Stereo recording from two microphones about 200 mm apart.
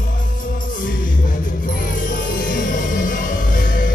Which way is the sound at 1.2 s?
45° left (ahead or behind).